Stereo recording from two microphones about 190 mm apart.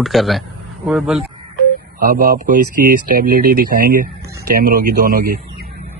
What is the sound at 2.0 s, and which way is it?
Speech, 50° right (ahead or behind).